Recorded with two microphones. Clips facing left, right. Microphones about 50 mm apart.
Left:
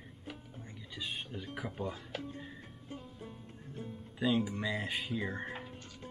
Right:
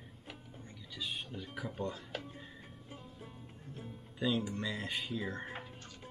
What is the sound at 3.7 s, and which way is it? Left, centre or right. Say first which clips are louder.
Speech: left 4 dB; centre.